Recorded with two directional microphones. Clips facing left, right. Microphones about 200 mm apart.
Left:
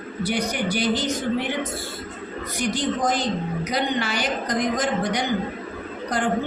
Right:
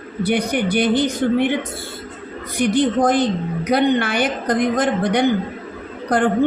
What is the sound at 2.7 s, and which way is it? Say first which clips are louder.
A woman's voice: right 8 dB; 55° right (ahead or behind).